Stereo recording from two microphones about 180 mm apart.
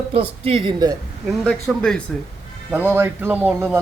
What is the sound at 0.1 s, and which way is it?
Speech, 30° right (ahead or behind).